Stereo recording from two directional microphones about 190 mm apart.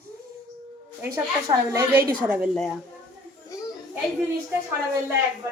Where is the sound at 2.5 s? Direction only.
Centre (ahead or behind).